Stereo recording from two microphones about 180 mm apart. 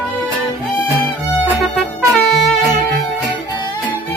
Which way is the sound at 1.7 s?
5° left (ahead or behind).